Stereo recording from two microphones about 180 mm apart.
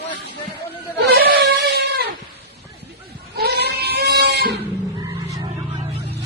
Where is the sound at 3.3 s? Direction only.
65° right (ahead or behind).